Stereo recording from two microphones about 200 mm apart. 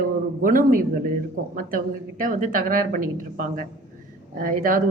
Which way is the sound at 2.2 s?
40° right (ahead or behind).